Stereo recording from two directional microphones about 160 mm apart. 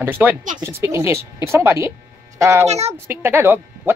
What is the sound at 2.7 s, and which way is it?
Speech, 40° right (ahead or behind).